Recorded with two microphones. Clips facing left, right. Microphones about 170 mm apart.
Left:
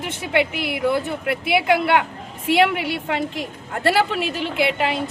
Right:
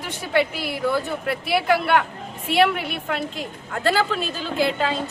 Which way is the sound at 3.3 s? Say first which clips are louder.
Left 2 dB; 85° left.